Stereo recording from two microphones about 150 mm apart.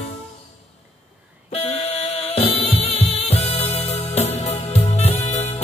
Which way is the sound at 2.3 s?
40° left (ahead or behind).